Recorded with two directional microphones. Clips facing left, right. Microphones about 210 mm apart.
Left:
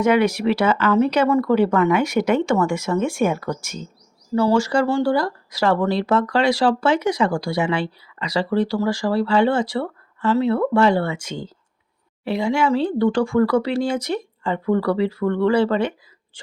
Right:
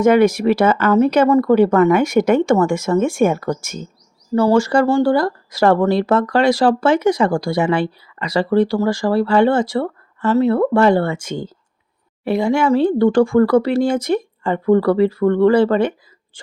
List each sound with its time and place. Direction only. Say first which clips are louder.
0.0 s speech: right 5 dB; 45° right (ahead or behind)